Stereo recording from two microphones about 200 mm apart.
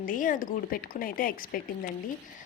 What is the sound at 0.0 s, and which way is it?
A woman's voice, 40° left (ahead or behind).